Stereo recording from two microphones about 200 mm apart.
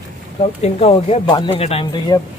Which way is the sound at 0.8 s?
30° left (ahead or behind).